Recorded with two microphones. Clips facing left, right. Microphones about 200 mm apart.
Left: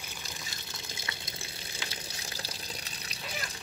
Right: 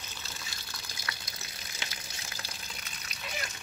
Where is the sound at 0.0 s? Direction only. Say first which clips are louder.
Left 2 dB; 15° left (ahead or behind); by 3.3 s 35° left (ahead or behind).